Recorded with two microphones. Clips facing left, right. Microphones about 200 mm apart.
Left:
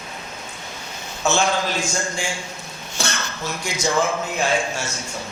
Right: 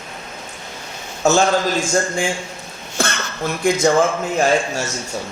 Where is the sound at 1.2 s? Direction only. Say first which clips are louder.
Right 5 dB; 45° right (ahead or behind).